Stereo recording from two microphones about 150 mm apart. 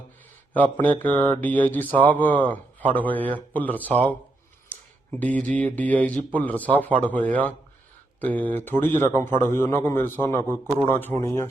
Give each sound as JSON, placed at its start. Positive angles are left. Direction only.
{"t": 0.5, "sound": "speech", "side_deg": 10}
{"t": 5.2, "sound": "speech", "side_deg": 10}